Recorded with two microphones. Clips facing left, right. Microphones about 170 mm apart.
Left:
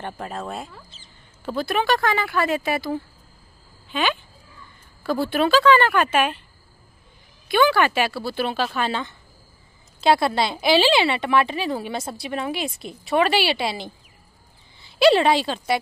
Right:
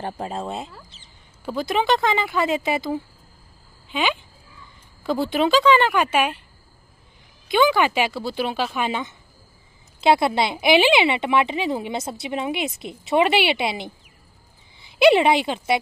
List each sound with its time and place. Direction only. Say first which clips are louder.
0.0 s a woman's voice: right 3 dB; 30° right (ahead or behind)
0.8 s speech: left 1 dB; 65° right (ahead or behind)
1.4 s a woman's voice: right 1 dB; 15° right (ahead or behind)
7.4 s a woman's voice: even; 20° right (ahead or behind)